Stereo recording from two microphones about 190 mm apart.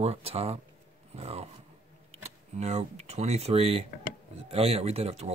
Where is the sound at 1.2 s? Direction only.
35° right (ahead or behind).